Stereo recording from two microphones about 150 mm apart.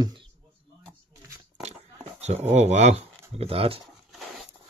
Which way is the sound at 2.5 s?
50° right (ahead or behind).